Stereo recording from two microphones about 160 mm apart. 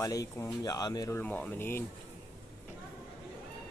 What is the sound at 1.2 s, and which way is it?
Speech, 10° left (ahead or behind).